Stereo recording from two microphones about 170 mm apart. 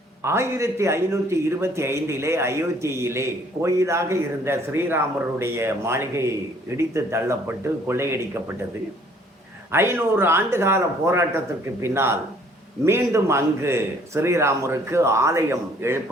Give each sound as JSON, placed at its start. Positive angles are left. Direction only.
{"t": 0.2, "sound": "a man's voice", "side_deg": -15}
{"t": 9.7, "sound": "a man's voice", "side_deg": -15}